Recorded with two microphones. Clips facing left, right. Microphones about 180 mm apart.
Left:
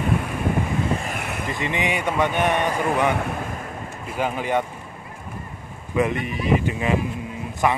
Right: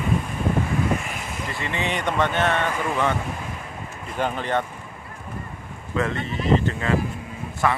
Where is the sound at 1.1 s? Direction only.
60° left (ahead or behind).